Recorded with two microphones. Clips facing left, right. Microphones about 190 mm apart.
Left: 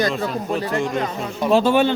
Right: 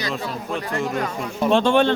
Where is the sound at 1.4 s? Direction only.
5° left (ahead or behind).